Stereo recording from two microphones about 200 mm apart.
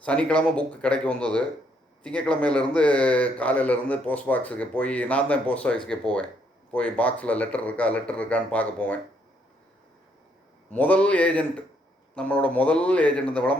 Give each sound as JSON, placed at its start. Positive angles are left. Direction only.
{"t": 0.0, "sound": "a man's voice", "side_deg": 5}
{"t": 10.7, "sound": "a man's voice", "side_deg": 5}